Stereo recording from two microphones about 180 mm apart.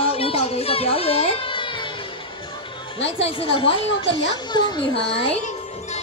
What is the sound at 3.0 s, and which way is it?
A woman's voice, 30° left (ahead or behind).